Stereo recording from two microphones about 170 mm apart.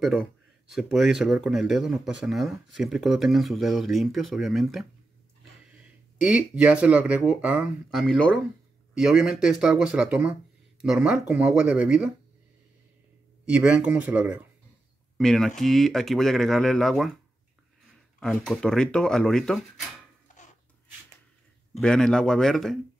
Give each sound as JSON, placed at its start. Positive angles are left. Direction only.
{"t": 0.0, "sound": "speech", "side_deg": 0}
{"t": 6.2, "sound": "speech", "side_deg": -5}
{"t": 13.5, "sound": "speech", "side_deg": -10}
{"t": 18.2, "sound": "speech", "side_deg": 0}
{"t": 20.3, "sound": "a sound", "side_deg": 50}
{"t": 21.7, "sound": "speech", "side_deg": 5}